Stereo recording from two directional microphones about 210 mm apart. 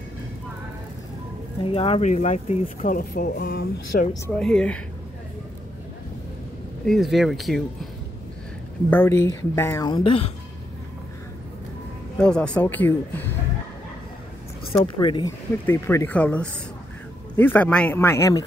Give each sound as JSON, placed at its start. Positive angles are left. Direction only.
{"t": 1.6, "sound": "speech", "side_deg": 25}
{"t": 4.3, "sound": "speech", "side_deg": 5}
{"t": 6.9, "sound": "speech", "side_deg": 0}
{"t": 8.9, "sound": "speech", "side_deg": 10}
{"t": 12.2, "sound": "speech", "side_deg": 5}
{"t": 14.7, "sound": "speech", "side_deg": 25}